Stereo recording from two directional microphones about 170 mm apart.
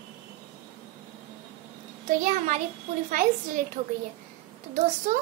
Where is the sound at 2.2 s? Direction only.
50° right (ahead or behind).